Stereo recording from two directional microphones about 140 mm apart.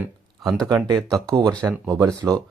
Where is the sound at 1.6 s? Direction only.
15° right (ahead or behind).